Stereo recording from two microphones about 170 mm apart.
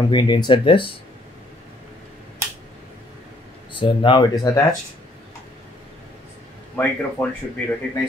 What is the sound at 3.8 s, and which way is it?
Speech, 30° left (ahead or behind).